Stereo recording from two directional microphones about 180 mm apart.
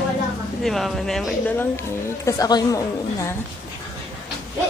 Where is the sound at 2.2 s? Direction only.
20° left (ahead or behind).